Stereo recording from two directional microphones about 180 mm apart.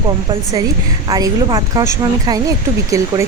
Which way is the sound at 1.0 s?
20° right (ahead or behind).